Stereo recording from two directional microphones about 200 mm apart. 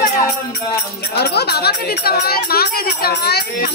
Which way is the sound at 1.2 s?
55° left (ahead or behind).